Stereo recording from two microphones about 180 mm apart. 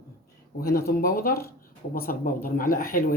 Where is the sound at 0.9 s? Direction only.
55° left (ahead or behind).